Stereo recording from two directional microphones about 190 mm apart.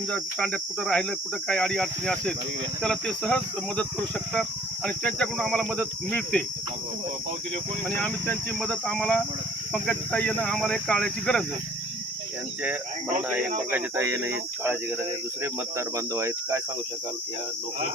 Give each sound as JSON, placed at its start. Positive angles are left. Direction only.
{"t": 0.1, "sound": "speech", "side_deg": 5}
{"t": 7.9, "sound": "speech", "side_deg": 5}
{"t": 13.7, "sound": "speech", "side_deg": -10}
{"t": 16.0, "sound": "speech", "side_deg": -15}